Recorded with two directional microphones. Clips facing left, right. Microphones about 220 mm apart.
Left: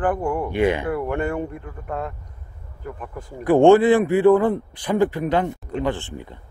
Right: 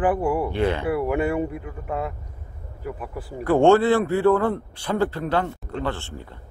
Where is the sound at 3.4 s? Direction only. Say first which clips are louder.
Left 3 dB; 15° left (ahead or behind).